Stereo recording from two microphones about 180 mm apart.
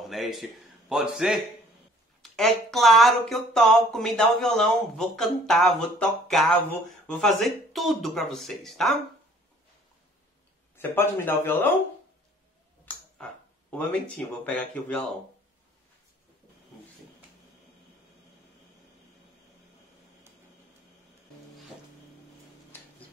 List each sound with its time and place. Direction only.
0.1 s a man's voice: centre (ahead or behind)
10.8 s speech: 10° left (ahead or behind)
12.8 s speech: 5° left (ahead or behind)